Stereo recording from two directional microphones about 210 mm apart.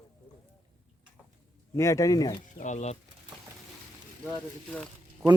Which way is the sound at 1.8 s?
15° left (ahead or behind).